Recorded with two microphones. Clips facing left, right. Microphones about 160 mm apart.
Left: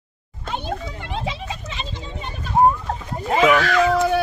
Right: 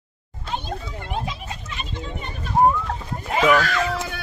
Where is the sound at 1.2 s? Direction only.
80° left.